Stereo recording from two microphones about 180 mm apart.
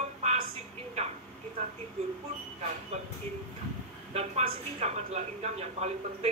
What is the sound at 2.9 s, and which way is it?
Speech, 40° right (ahead or behind).